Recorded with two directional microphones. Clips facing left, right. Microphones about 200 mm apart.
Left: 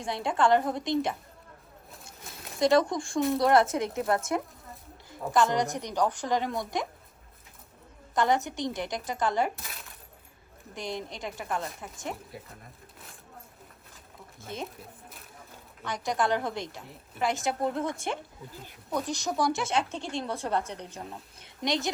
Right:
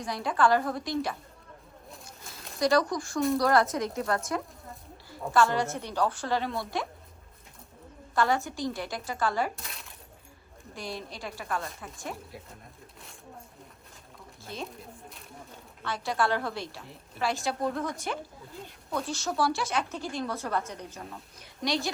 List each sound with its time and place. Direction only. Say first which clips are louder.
0.0 s speech: even; 25° left (ahead or behind)
1.9 s a sound: even; centre (ahead or behind)
2.6 s speech: left 2 dB; 25° left (ahead or behind)
3.2 s speech: even; centre (ahead or behind)
3.4 s speech: left 2 dB; 25° left (ahead or behind)
8.1 s speech: left 1 dB; 20° left (ahead or behind)
9.6 s coin: even; centre (ahead or behind)
10.8 s speech: left 3 dB; 20° left (ahead or behind)
12.1 s speech: even; centre (ahead or behind)
14.5 s speech: left 1 dB; 20° left (ahead or behind)
15.8 s speech: even; 15° left (ahead or behind)
18.5 s speech: even; centre (ahead or behind)
18.9 s speech: left 1 dB; 15° left (ahead or behind)